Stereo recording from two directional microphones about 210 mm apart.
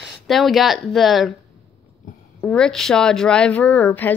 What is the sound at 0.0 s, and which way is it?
Speech, centre (ahead or behind).